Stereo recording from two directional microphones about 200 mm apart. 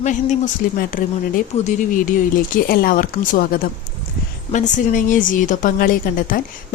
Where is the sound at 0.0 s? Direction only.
40° left (ahead or behind).